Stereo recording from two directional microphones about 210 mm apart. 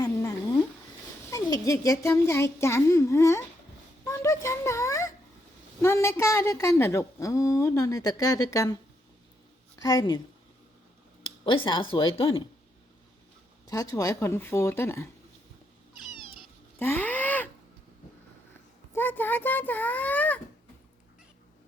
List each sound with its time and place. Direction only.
0.0 s a sound: 15° left (ahead or behind)
1.3 s a woman's voice: 15° left (ahead or behind)
4.0 s a sound: 15° left (ahead or behind)
5.8 s a woman's voice: 15° left (ahead or behind)
11.4 s a woman's voice: 25° left (ahead or behind)
13.7 s a woman's voice: 15° left (ahead or behind)
16.1 s cat: 25° left (ahead or behind)
16.7 s cat: 10° left (ahead or behind)
18.9 s a woman's voice: 10° left (ahead or behind)